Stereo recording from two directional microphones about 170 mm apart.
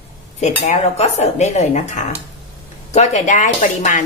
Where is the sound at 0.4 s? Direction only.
40° left (ahead or behind).